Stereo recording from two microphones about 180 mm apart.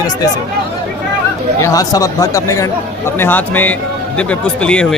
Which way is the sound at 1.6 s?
20° left (ahead or behind).